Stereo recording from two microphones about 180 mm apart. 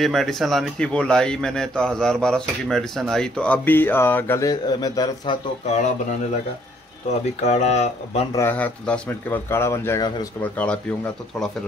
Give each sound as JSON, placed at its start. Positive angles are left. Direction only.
{"t": 0.0, "sound": "speech", "side_deg": 0}
{"t": 7.4, "sound": "speech", "side_deg": 40}
{"t": 8.3, "sound": "speech", "side_deg": 15}
{"t": 10.4, "sound": "speech", "side_deg": 5}